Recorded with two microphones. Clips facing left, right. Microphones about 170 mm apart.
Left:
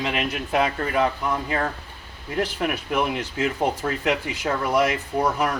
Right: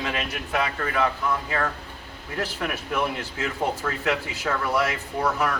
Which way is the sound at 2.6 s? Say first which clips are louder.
Left 1 dB; 25° left (ahead or behind).